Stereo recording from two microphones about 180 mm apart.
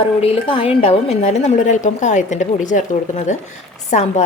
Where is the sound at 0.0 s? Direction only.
30° left (ahead or behind).